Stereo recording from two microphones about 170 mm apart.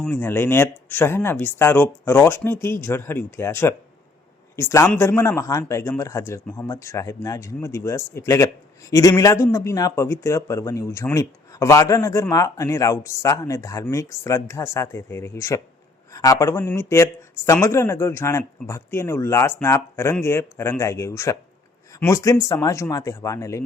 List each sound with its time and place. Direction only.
0.0 s speech: 10° left (ahead or behind)